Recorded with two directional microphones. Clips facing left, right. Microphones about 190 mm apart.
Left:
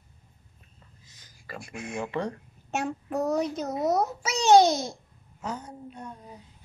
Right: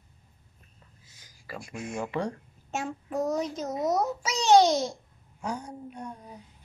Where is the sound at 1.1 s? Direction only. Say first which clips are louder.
Right 1 dB; 10° right (ahead or behind).